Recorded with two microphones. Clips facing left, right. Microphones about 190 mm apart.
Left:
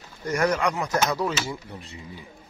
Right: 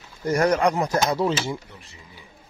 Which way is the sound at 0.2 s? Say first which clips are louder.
Right 4 dB; 35° right (ahead or behind).